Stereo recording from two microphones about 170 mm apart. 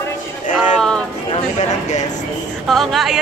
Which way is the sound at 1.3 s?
45° left (ahead or behind).